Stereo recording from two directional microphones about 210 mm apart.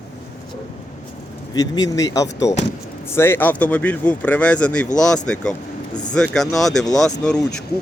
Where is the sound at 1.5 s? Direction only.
20° left (ahead or behind); by 6.9 s centre (ahead or behind).